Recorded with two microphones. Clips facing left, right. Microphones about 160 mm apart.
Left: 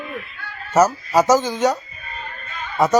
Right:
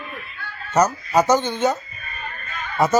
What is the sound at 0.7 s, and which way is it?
A man's voice, 5° left (ahead or behind).